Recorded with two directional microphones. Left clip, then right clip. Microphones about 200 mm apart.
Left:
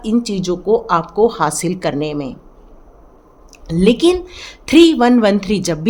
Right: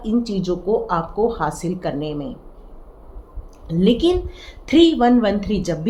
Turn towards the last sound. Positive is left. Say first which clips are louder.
# left 5 dB
turn(degrees=50)  # may be behind; listen again after turning